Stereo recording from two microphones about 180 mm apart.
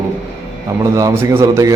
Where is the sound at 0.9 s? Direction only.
20° right (ahead or behind).